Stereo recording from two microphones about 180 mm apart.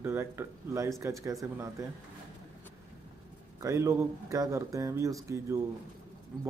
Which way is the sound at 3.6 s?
15° right (ahead or behind).